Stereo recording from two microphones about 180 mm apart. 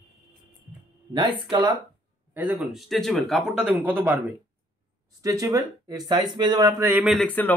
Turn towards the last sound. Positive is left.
turn(degrees=10)  # may be behind; listen again after turning